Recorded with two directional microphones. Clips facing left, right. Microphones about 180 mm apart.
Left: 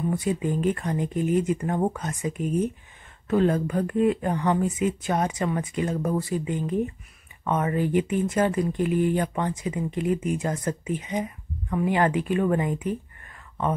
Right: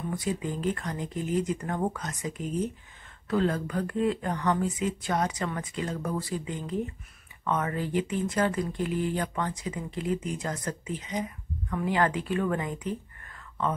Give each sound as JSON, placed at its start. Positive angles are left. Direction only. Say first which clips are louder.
{"t": 0.4, "sound": "speech", "louder": "left 5 dB", "side_deg": 15}